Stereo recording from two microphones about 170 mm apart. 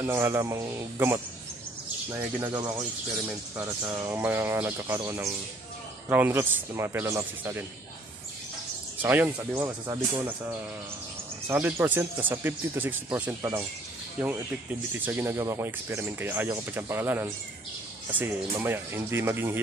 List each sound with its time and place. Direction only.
0.0 s speech: 15° right (ahead or behind)
2.4 s speech: 25° right (ahead or behind)
9.0 s speech: 10° right (ahead or behind)
11.4 s speech: 15° right (ahead or behind)
15.0 s speech: 15° right (ahead or behind)